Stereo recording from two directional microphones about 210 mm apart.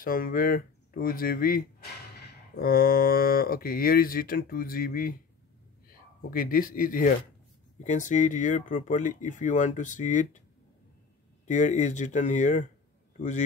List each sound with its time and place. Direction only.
0.0 s a man's voice: 40° left (ahead or behind)
11.4 s speech: 35° left (ahead or behind)